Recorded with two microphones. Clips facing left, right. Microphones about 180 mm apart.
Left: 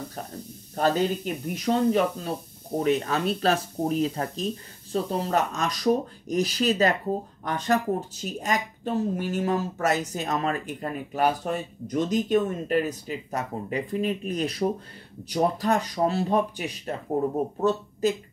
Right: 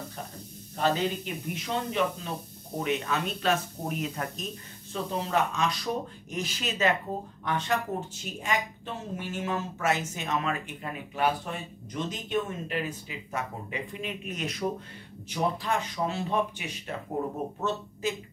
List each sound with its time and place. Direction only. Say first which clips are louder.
0.7 s speech: left 4 dB; 45° left (ahead or behind)